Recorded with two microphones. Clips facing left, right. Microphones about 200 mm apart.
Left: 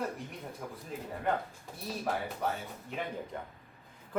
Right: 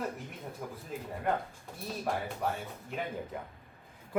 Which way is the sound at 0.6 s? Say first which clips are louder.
Right 2 dB; 5° right (ahead or behind).